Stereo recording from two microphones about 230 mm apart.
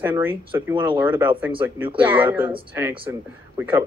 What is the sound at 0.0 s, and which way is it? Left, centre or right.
Speech, centre.